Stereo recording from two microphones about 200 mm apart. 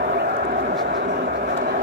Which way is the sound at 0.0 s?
50° right (ahead or behind).